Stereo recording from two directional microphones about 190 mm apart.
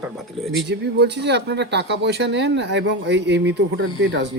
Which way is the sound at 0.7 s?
65° right (ahead or behind).